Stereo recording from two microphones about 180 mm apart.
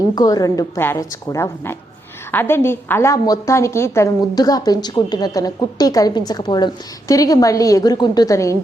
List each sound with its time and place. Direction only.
0.2 s a woman's voice: 20° left (ahead or behind)